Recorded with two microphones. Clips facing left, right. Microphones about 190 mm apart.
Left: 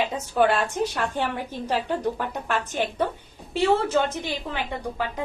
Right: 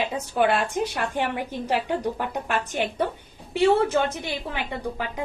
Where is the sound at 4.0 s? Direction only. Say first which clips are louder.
Even; 55° right (ahead or behind).